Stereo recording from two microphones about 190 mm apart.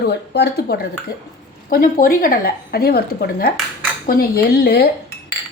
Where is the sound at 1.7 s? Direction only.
50° left (ahead or behind).